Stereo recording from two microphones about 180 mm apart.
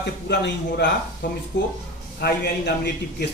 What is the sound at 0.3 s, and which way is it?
A man's voice, 75° left (ahead or behind).